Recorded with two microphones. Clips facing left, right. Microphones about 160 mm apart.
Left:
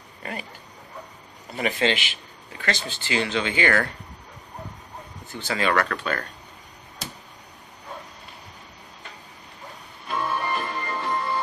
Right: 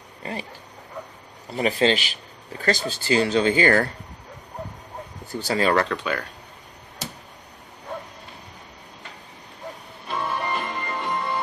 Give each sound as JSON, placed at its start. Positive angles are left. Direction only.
{"t": 0.2, "sound": "speech", "side_deg": -30}
{"t": 1.6, "sound": "speech", "side_deg": -35}
{"t": 5.3, "sound": "speech", "side_deg": -35}
{"t": 5.9, "sound": "speech", "side_deg": -15}
{"t": 10.0, "sound": "music", "side_deg": -20}